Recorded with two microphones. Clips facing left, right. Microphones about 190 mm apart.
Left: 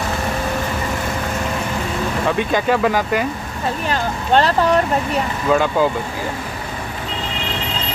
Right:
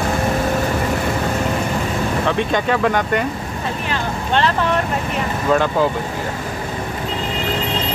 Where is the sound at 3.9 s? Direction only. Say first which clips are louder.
Left 4 dB; 40° left (ahead or behind).